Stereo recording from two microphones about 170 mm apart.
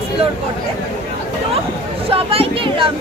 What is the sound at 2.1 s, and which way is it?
Speech, 35° right (ahead or behind).